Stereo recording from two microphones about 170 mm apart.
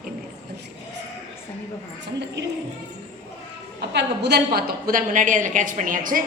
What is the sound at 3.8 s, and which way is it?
A woman's voice, 80° right.